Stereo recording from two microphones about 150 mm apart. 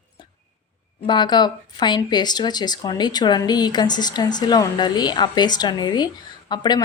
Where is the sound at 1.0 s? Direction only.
30° left (ahead or behind).